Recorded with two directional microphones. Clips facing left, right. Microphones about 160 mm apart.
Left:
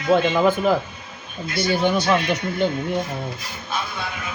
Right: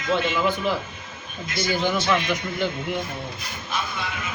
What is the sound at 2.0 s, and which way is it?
Speech, 35° left (ahead or behind).